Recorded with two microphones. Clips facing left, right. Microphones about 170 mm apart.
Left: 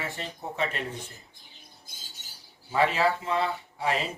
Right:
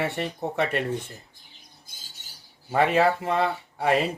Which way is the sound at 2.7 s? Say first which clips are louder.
Right 4 dB; 55° right (ahead or behind).